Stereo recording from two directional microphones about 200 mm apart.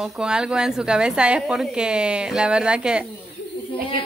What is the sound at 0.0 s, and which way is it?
A woman's voice, 5° right (ahead or behind).